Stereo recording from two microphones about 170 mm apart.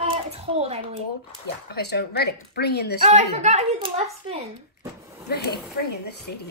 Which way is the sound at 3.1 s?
40° right (ahead or behind).